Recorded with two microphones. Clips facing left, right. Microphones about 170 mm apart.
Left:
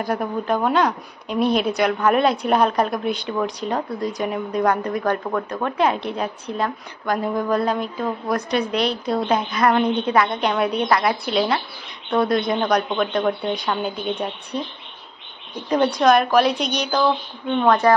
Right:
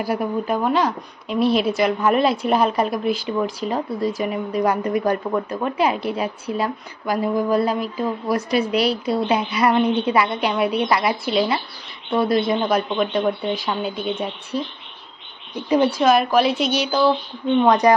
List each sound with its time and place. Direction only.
0.0 s speech: 5° right (ahead or behind)
17.6 s a woman's voice: 15° right (ahead or behind)